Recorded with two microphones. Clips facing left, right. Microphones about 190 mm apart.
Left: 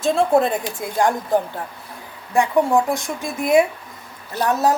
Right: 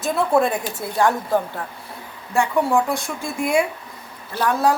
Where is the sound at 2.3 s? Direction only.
20° left (ahead or behind).